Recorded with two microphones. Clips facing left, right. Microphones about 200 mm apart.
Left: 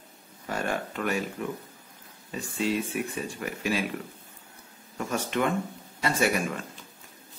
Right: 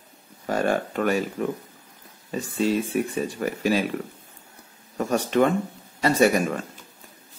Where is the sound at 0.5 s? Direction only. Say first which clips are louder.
Right 7 dB; 40° right (ahead or behind).